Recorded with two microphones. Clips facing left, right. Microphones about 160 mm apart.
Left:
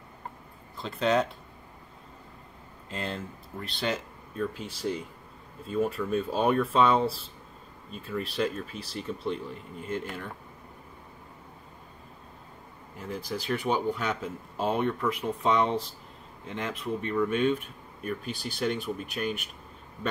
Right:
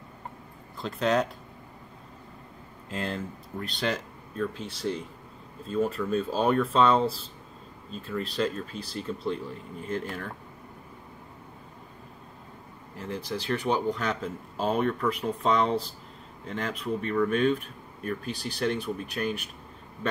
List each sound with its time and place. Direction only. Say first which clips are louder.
0.7 s speech: even; centre (ahead or behind)
2.9 s speech: right 2 dB; centre (ahead or behind)
8.1 s speech: right 1 dB; 5° left (ahead or behind)
13.0 s speech: right 1 dB; 5° left (ahead or behind)